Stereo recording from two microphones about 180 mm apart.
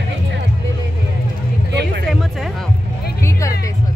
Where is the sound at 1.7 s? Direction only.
65° right (ahead or behind).